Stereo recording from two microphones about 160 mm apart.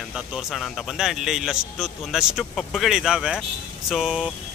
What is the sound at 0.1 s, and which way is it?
Speech, 5° right (ahead or behind).